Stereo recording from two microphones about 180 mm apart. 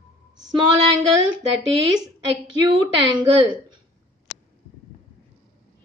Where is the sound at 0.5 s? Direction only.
25° right (ahead or behind).